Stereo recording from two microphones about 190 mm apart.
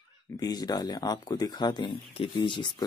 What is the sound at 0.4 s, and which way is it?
Speech, 20° left (ahead or behind).